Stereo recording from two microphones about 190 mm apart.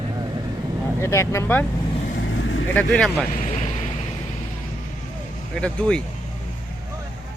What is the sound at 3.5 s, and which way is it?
Vehicle, 35° left (ahead or behind).